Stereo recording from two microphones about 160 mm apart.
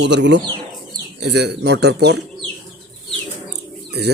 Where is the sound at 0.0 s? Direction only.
90° right.